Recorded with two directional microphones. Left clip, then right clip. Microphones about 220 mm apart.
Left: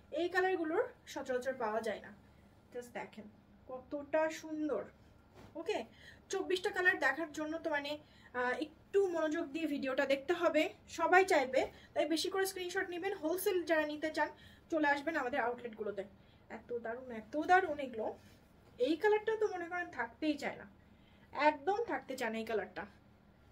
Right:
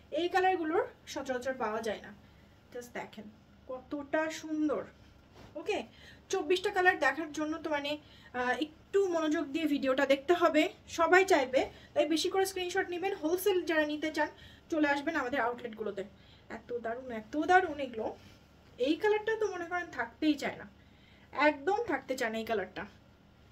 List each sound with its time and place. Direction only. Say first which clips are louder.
0.1 s a woman's voice: right 5 dB; 10° right (ahead or behind)